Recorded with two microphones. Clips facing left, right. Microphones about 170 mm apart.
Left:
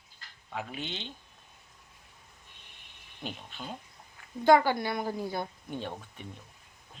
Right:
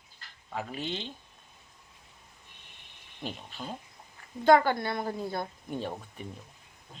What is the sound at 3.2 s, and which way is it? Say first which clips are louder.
A child's voice: right 2 dB; centre (ahead or behind).